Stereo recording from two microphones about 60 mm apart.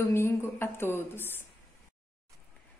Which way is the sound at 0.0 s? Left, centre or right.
Left.